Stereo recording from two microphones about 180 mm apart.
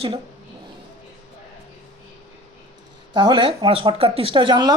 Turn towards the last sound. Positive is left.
turn(degrees=-25)  # may be behind; listen again after turning